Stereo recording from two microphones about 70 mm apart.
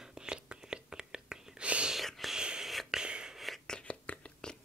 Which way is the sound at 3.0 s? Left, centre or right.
Centre.